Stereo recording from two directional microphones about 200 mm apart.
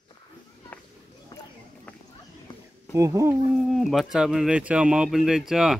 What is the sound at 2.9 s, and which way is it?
Speech, 15° right (ahead or behind).